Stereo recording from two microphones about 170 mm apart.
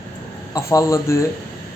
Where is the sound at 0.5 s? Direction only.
20° left (ahead or behind).